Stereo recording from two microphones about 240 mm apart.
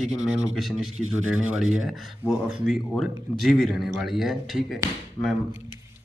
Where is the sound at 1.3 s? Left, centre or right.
Centre.